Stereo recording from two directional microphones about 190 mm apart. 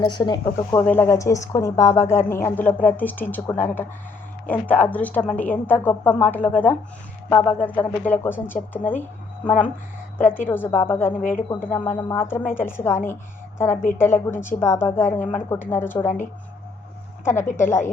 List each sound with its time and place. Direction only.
0.0 s a woman's voice: 25° left (ahead or behind)
10.2 s a woman's voice: 10° left (ahead or behind)
14.0 s a woman's voice: 15° left (ahead or behind)
17.2 s a woman's voice: 15° left (ahead or behind)